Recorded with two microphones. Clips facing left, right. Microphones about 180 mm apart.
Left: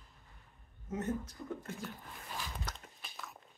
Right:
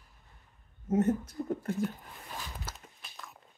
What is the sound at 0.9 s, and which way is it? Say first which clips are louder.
Speech: right 9 dB; 45° right (ahead or behind).